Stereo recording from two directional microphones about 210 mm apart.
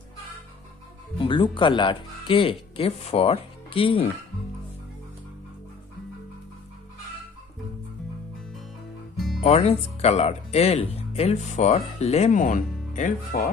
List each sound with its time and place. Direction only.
1.1 s speech: 25° left (ahead or behind)
9.1 s music: centre (ahead or behind)
9.4 s speech: 30° left (ahead or behind)